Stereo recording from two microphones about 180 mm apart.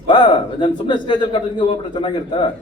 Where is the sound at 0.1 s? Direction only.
25° left (ahead or behind).